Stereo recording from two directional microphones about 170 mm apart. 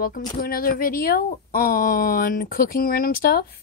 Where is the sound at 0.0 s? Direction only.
55° left (ahead or behind).